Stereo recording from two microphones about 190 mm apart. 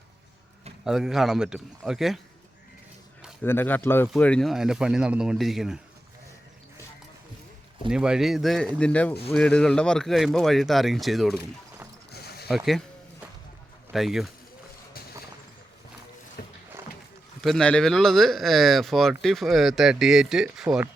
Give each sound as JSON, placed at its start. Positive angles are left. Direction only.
{"t": 0.9, "sound": "speech", "side_deg": 0}
{"t": 3.4, "sound": "speech", "side_deg": 10}
{"t": 7.9, "sound": "speech", "side_deg": -5}
{"t": 12.1, "sound": "a sound", "side_deg": 55}
{"t": 12.5, "sound": "speech", "side_deg": 0}
{"t": 13.9, "sound": "speech", "side_deg": 0}
{"t": 16.4, "sound": "a sound", "side_deg": 55}
{"t": 17.4, "sound": "speech", "side_deg": 5}